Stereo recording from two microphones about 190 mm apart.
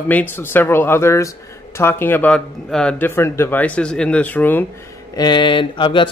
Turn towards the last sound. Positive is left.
turn(degrees=25)  # may be behind; listen again after turning